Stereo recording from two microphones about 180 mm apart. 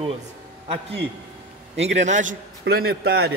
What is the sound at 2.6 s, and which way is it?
Speech, 60° right (ahead or behind).